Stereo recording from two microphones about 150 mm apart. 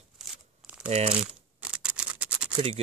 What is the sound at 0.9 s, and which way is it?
Speech, 40° right (ahead or behind).